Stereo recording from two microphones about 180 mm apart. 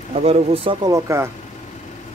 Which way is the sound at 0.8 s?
20° right (ahead or behind).